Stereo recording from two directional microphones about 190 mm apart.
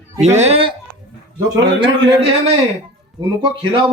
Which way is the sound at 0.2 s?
35° right (ahead or behind).